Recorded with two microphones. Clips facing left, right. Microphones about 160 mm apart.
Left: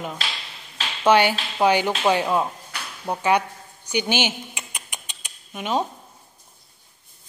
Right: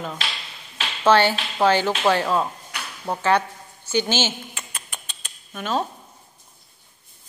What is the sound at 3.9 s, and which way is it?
Rodents, 15° left (ahead or behind).